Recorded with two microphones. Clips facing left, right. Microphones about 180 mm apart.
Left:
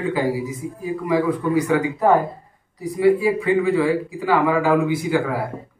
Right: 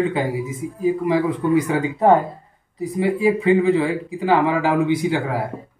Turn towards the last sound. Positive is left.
turn(degrees=-20)  # may be behind; listen again after turning